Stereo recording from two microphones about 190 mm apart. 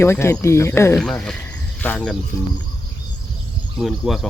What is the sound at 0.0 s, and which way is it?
Speech, 15° left (ahead or behind).